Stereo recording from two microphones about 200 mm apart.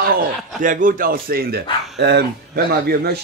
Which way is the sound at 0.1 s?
40° right (ahead or behind).